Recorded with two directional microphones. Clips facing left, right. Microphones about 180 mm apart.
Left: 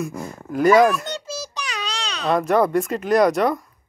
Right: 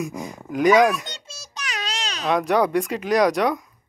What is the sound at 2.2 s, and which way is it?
Speech, centre (ahead or behind).